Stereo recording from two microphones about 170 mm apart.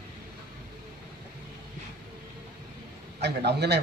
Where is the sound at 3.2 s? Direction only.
80° right.